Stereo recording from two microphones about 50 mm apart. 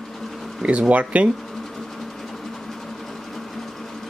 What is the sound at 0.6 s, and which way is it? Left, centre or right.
Speech, right.